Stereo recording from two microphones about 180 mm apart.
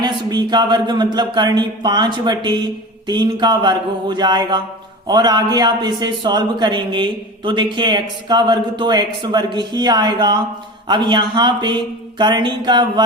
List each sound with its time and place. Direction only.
0.0 s a man's voice: 25° right (ahead or behind)